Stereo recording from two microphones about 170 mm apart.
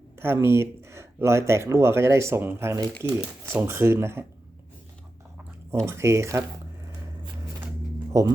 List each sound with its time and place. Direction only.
0.2 s speech: 15° right (ahead or behind)
5.8 s speech: 15° right (ahead or behind)
8.1 s speech: 20° right (ahead or behind)